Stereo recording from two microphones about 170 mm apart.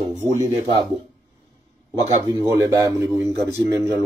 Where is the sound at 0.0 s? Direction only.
45° right (ahead or behind).